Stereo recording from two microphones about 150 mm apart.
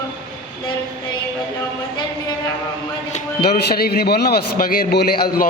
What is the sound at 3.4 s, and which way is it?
A man's voice, 90° left.